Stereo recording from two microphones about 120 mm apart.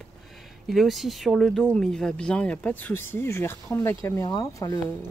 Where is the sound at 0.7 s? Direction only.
Centre (ahead or behind); by 4.7 s 30° left (ahead or behind).